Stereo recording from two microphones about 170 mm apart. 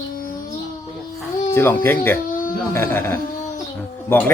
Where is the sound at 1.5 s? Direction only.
15° left (ahead or behind).